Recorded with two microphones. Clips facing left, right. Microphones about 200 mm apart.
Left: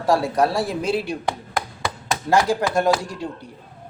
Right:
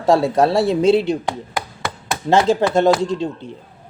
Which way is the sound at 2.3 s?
25° right (ahead or behind).